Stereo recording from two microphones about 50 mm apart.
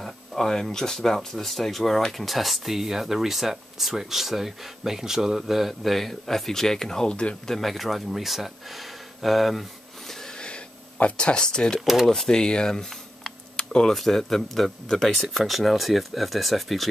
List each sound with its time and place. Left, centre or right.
0.0 s speech: centre
10.2 s a sound: centre
11.8 s speech: centre
12.1 s speech: centre
13.6 s tick-tock: centre
13.9 s speech: centre